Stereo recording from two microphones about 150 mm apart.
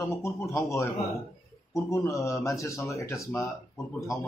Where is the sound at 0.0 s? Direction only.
20° left (ahead or behind).